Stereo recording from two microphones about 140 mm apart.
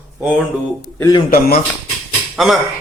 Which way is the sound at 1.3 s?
90° left.